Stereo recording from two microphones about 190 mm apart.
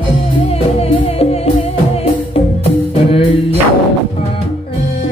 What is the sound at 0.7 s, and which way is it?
Music, 30° left (ahead or behind).